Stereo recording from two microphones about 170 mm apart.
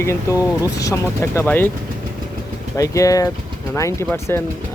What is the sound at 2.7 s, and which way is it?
Speech, 20° left (ahead or behind).